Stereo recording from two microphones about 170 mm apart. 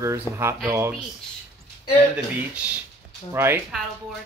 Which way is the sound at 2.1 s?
5° right (ahead or behind).